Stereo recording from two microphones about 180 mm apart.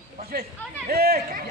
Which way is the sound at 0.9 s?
55° right (ahead or behind).